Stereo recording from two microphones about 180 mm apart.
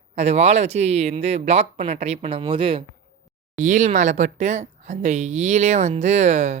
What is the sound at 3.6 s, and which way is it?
Speech, 40° right (ahead or behind).